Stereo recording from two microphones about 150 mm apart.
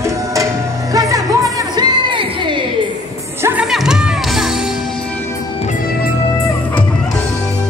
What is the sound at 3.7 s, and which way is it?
Music, centre (ahead or behind).